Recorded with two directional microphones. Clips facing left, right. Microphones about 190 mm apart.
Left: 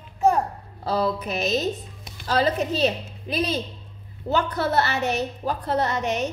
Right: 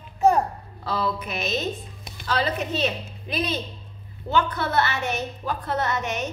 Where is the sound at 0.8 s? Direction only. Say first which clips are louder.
Left 3 dB; 40° left (ahead or behind).